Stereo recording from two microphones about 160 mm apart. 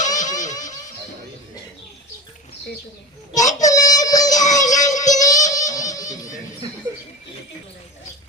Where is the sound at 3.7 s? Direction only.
20° left (ahead or behind).